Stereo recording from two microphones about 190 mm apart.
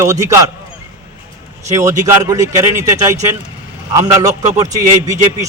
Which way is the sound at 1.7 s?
15° right (ahead or behind).